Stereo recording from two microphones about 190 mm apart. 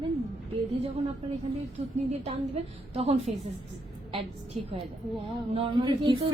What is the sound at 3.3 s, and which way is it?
Speech, 40° right (ahead or behind).